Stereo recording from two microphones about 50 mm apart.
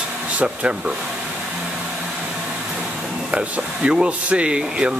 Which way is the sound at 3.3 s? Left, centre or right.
Right.